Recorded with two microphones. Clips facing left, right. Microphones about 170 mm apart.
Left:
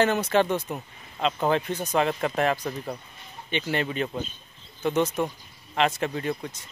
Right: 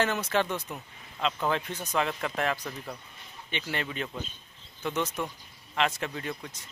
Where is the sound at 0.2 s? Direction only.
30° left (ahead or behind).